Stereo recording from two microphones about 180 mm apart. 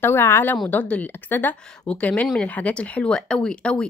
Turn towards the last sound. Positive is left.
turn(degrees=5)  # may be behind; listen again after turning